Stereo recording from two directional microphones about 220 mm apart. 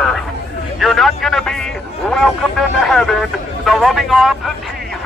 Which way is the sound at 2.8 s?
Centre (ahead or behind).